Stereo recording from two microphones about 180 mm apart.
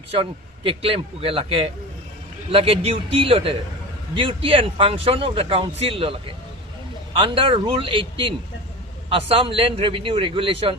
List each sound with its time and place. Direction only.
0.1 s a man's voice: 30° right (ahead or behind)